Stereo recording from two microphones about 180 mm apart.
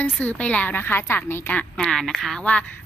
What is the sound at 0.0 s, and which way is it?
A woman's voice, 10° left (ahead or behind).